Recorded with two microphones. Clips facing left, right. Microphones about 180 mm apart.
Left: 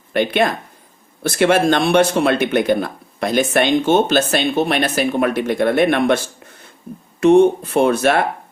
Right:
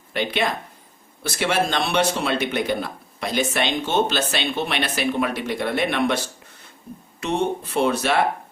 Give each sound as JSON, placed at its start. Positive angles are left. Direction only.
{"t": 0.1, "sound": "speech", "side_deg": 50}
{"t": 7.2, "sound": "speech", "side_deg": 50}